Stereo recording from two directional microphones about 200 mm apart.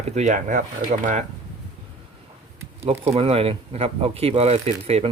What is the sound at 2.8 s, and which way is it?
Speech, 30° right (ahead or behind).